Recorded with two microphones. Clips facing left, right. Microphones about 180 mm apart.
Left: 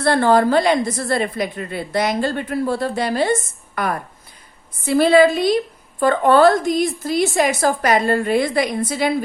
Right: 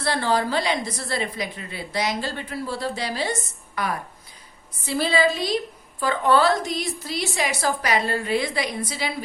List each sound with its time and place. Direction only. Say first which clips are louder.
0.0 s a woman's voice: left 8 dB; 55° left (ahead or behind)